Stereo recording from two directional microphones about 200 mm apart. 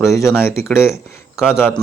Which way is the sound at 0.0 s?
15° left (ahead or behind).